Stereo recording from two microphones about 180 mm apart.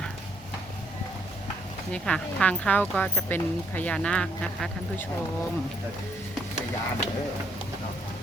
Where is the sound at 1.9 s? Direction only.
5° left (ahead or behind).